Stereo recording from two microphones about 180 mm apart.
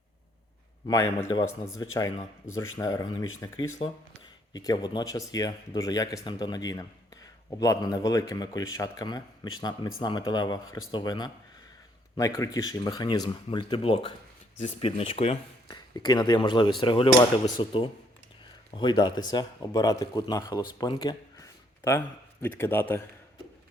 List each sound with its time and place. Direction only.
0.9 s a man's voice: 15° left (ahead or behind)
21.8 s speech: 15° left (ahead or behind)